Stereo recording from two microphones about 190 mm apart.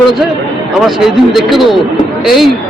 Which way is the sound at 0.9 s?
Centre (ahead or behind).